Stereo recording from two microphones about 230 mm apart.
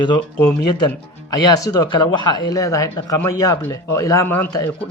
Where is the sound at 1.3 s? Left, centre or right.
Centre.